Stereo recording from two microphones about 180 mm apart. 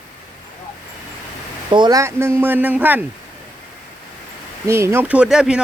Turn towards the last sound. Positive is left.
turn(degrees=-5)  # may be behind; listen again after turning